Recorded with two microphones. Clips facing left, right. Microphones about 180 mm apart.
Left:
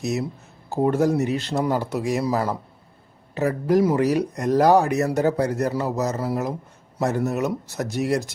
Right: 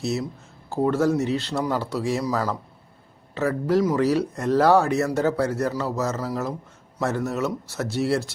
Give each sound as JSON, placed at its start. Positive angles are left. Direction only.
{"t": 0.0, "sound": "a man's voice", "side_deg": 15}
{"t": 3.8, "sound": "speech", "side_deg": 20}